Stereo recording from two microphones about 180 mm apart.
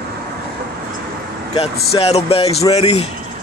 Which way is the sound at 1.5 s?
35° left (ahead or behind).